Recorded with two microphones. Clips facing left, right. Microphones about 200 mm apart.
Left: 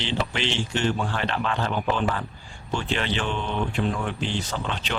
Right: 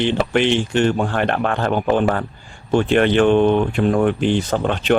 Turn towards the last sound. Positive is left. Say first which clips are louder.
# right 11 dB
turn(degrees=-55)  # may be behind; listen again after turning